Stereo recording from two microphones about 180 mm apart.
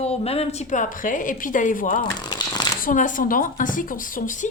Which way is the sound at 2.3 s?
25° left (ahead or behind).